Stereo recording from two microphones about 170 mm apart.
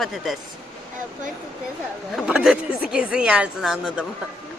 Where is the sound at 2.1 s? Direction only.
5° right (ahead or behind).